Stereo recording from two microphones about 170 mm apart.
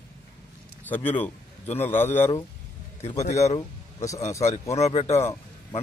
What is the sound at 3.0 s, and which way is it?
Speech, 40° left (ahead or behind).